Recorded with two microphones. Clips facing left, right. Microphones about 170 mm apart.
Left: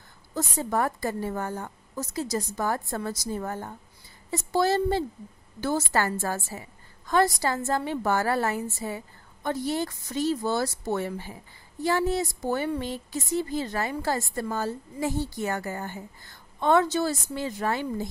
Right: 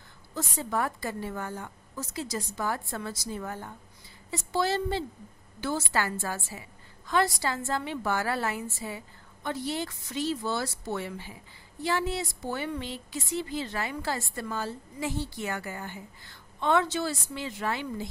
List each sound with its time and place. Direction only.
0.3 s speech: 40° left (ahead or behind)